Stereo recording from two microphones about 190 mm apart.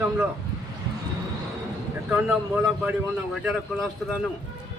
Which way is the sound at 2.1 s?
10° right (ahead or behind).